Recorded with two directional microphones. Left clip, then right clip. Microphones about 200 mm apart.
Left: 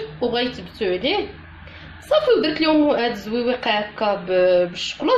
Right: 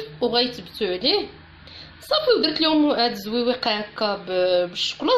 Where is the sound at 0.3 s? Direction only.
35° right (ahead or behind).